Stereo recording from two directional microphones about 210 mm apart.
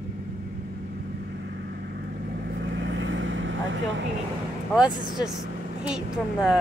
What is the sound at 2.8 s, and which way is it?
Vehicle, 60° right (ahead or behind).